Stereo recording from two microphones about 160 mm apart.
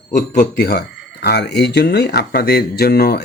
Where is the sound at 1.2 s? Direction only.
90° left.